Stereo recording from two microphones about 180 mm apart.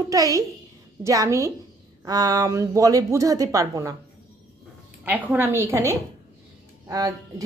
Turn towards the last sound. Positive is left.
turn(degrees=-20)  # may be behind; listen again after turning